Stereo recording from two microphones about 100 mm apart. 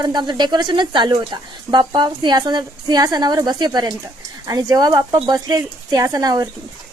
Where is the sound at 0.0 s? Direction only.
45° right (ahead or behind).